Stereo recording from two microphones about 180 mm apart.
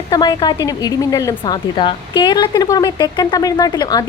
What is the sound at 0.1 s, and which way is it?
A woman's voice, 25° left (ahead or behind).